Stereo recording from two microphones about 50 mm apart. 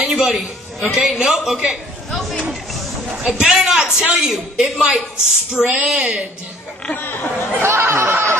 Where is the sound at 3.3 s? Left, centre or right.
Centre.